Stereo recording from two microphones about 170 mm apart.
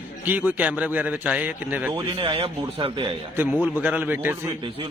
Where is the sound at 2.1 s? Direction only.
35° right (ahead or behind).